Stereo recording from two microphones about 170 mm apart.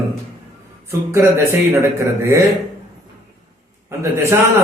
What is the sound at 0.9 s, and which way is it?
Speech, 15° right (ahead or behind).